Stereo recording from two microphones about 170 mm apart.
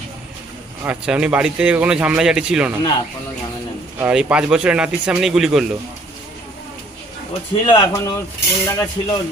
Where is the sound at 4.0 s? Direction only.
10° right (ahead or behind).